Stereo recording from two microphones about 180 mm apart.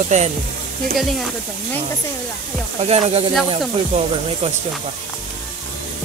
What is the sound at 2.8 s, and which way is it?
Speech, 35° right (ahead or behind).